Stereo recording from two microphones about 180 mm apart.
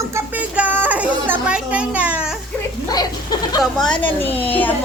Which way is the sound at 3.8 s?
5° left (ahead or behind).